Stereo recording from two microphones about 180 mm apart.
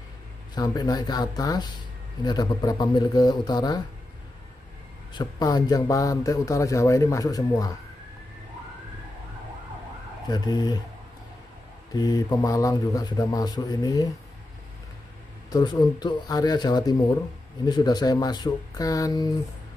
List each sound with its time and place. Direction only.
0.6 s speech: 20° left (ahead or behind)
5.1 s speech: 20° left (ahead or behind)
10.2 s speech: 20° left (ahead or behind)
11.9 s speech: 20° left (ahead or behind)
15.5 s speech: 20° left (ahead or behind)